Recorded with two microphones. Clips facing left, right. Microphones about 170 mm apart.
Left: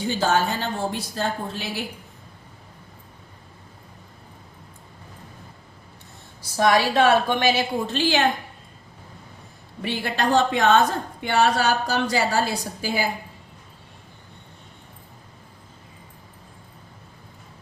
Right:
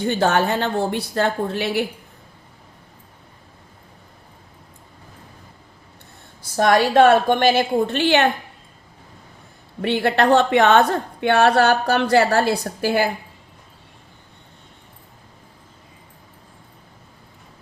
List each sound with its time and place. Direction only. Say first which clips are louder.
0.0 s a woman's voice: right 3 dB; 60° right (ahead or behind)
6.4 s a woman's voice: right 3 dB; 55° right (ahead or behind)
9.8 s a woman's voice: right 7 dB; 60° right (ahead or behind)